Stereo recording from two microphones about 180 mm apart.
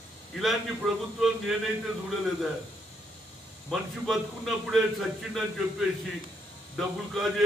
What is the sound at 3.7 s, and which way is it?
A man's voice, centre (ahead or behind).